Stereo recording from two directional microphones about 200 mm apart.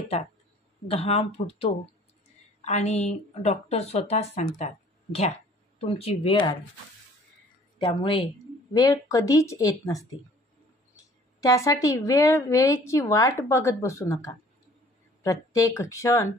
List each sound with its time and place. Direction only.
0.8 s speech: 30° left (ahead or behind)
7.8 s speech: 25° left (ahead or behind)
11.4 s speech: 15° left (ahead or behind)